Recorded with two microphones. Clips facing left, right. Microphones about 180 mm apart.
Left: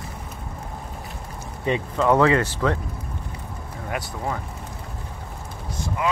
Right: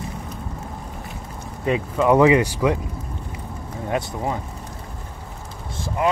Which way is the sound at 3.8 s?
20° right (ahead or behind).